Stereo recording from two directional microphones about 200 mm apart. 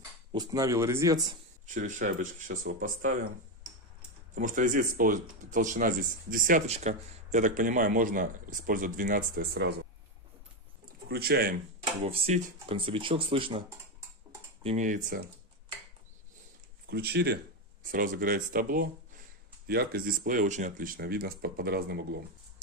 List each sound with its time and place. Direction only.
0.3 s speech: 20° right (ahead or behind)
1.7 s speech: 40° right (ahead or behind)
4.4 s speech: 40° right (ahead or behind)
11.1 s speech: 50° right (ahead or behind)
11.8 s speech: 35° right (ahead or behind)
14.6 s speech: 35° right (ahead or behind)
16.9 s speech: 55° right (ahead or behind)